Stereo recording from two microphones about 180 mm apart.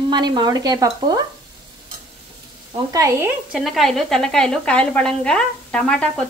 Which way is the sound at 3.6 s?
Centre (ahead or behind).